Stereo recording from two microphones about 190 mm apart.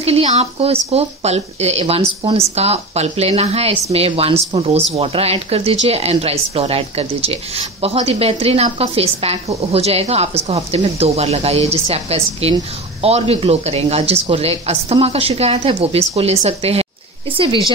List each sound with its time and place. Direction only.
0.0 s speech: 30° right (ahead or behind)